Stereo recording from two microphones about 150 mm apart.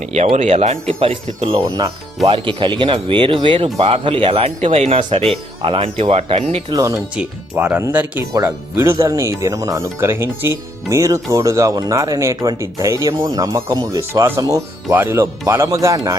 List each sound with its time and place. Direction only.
0.1 s speech: 45° right (ahead or behind)
1.6 s speech: 25° right (ahead or behind); by 6.6 s 45° right (ahead or behind)
6.7 s speech: 25° right (ahead or behind)
7.2 s speech: 10° right (ahead or behind)